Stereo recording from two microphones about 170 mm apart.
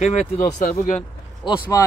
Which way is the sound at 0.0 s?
40° left (ahead or behind).